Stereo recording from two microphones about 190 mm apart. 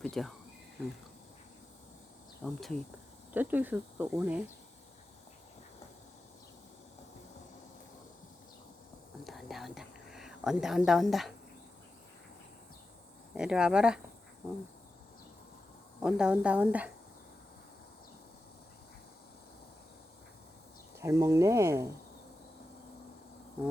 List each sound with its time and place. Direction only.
0.0 s speech: centre (ahead or behind)
2.4 s a woman's voice: centre (ahead or behind)
3.3 s speech: 10° right (ahead or behind)
9.2 s whispering: centre (ahead or behind)
13.3 s a woman's voice: 5° right (ahead or behind)
16.0 s a woman's voice: 5° right (ahead or behind)
21.0 s speech: 15° right (ahead or behind)